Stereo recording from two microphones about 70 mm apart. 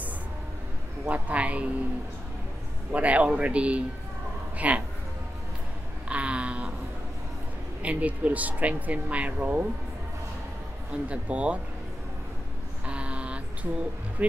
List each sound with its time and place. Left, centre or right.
1.0 s speech: right
2.9 s speech: right
6.0 s a sound: centre
7.8 s speech: centre
10.9 s speech: centre
12.8 s a sound: centre